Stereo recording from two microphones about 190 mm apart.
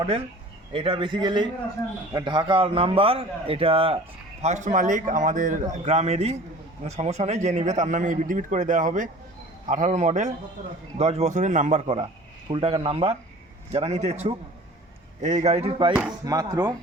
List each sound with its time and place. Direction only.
0.7 s a man's voice: 25° right (ahead or behind)
15.9 s speech: 5° right (ahead or behind)
16.2 s a man's voice: 20° right (ahead or behind)